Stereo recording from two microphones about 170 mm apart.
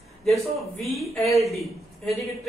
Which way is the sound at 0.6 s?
Centre (ahead or behind).